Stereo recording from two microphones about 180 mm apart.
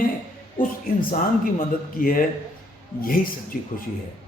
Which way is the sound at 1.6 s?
50° left (ahead or behind).